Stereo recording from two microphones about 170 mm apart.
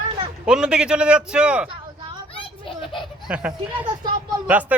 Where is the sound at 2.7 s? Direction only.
30° left (ahead or behind).